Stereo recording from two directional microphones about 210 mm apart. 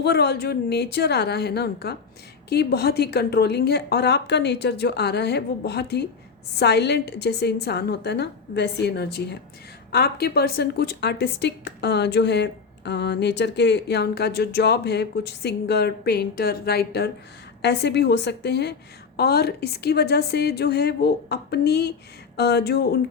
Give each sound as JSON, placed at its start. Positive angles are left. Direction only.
{"t": 0.0, "sound": "speech", "side_deg": 50}